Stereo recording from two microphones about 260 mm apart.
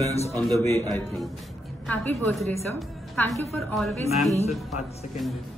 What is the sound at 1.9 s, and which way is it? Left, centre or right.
A woman's voice, centre.